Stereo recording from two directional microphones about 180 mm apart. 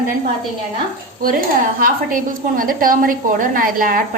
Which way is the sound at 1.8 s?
50° right (ahead or behind).